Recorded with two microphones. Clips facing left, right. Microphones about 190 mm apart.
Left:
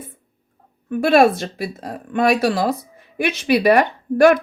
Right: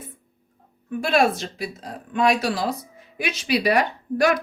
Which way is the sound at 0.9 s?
55° left (ahead or behind).